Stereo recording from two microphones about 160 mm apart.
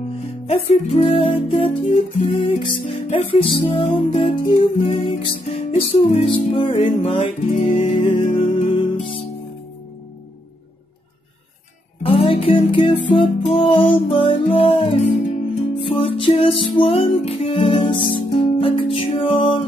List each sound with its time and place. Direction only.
0.5 s music: 40° left (ahead or behind)
12.0 s music: 35° left (ahead or behind)